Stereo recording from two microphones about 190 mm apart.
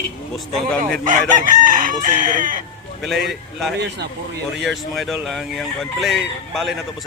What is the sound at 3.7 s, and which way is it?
Speech, 65° right (ahead or behind).